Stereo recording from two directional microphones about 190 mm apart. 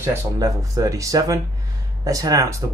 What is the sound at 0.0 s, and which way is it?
Speech, 15° right (ahead or behind).